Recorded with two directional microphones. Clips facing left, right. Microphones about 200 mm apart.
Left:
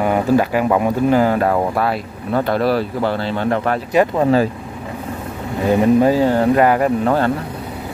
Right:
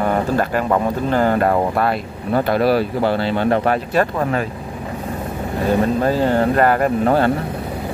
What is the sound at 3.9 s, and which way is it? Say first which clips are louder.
Speech: left 3 dB; 15° left (ahead or behind).